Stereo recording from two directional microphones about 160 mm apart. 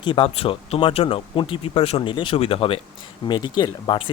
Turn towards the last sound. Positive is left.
turn(degrees=30)  # may be behind; listen again after turning